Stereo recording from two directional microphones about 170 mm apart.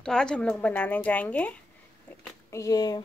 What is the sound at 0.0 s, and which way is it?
A woman's voice, 5° left (ahead or behind).